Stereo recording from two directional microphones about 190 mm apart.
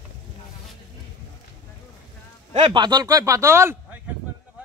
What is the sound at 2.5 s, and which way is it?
Speech, 25° right (ahead or behind).